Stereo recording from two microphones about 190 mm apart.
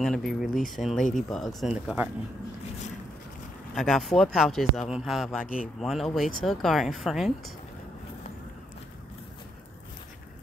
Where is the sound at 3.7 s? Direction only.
Centre (ahead or behind).